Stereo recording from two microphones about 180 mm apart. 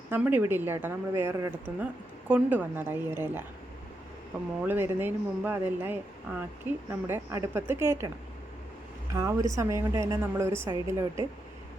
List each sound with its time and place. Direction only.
0.1 s a woman's voice: 10° right (ahead or behind)
4.6 s a woman's voice: 10° right (ahead or behind)
9.1 s a woman's voice: 15° right (ahead or behind)